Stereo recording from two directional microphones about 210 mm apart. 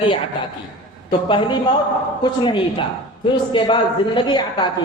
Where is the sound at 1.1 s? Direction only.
25° left (ahead or behind).